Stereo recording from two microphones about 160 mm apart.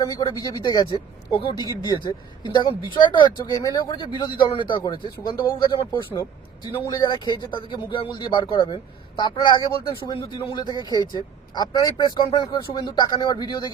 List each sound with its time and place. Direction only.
0.0 s speech: 25° left (ahead or behind)